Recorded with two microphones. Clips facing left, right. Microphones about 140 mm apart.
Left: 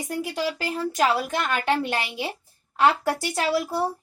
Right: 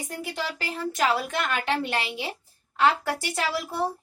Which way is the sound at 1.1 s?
40° left (ahead or behind).